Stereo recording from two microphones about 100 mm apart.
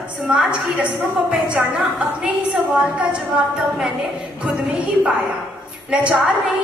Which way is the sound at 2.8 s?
15° right (ahead or behind).